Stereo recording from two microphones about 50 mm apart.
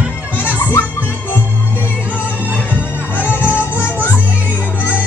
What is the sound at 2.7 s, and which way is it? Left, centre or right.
Music, left.